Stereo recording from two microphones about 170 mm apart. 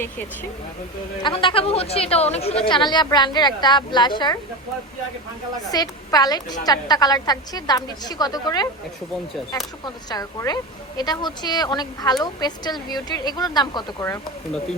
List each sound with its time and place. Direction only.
1.2 s a woman's voice: 30° left (ahead or behind)
5.7 s a woman's voice: 20° left (ahead or behind)
9.8 s a woman's voice: 20° left (ahead or behind)